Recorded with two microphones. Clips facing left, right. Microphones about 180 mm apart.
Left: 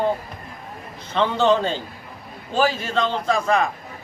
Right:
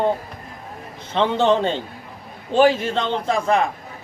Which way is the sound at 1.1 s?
25° right (ahead or behind).